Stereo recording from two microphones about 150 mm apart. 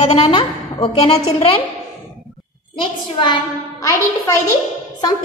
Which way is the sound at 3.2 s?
25° left (ahead or behind).